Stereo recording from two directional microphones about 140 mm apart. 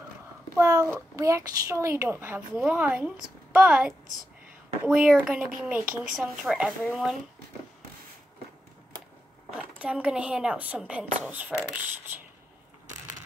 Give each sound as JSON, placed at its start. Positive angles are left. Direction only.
{"t": 0.6, "sound": "a sound", "side_deg": -20}
{"t": 1.1, "sound": "a woman's voice", "side_deg": -20}
{"t": 9.5, "sound": "a woman's voice", "side_deg": -5}